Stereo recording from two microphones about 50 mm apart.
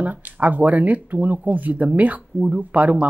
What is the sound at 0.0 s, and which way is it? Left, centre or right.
Speech, right.